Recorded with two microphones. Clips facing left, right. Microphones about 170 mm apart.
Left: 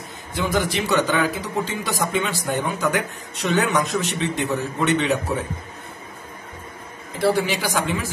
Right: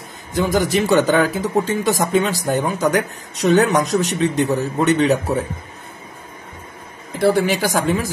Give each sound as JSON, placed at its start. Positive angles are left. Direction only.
{"t": 0.3, "sound": "a man's voice", "side_deg": -40}
{"t": 7.2, "sound": "speech", "side_deg": -50}